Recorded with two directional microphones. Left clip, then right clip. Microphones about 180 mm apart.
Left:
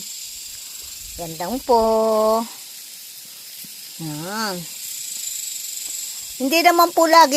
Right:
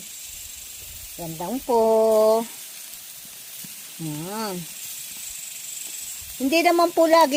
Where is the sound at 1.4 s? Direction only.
20° left (ahead or behind).